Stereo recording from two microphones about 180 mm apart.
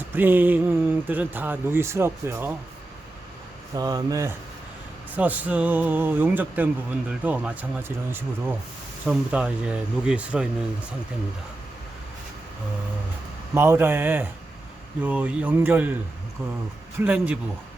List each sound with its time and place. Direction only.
0.1 s speech: 10° right (ahead or behind)
3.8 s speech: 20° right (ahead or behind); by 10.5 s 5° right (ahead or behind)
13.5 s speech: 15° right (ahead or behind)
17.0 s speech: 10° right (ahead or behind)